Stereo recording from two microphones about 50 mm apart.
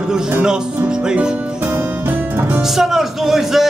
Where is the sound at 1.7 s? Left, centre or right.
Right.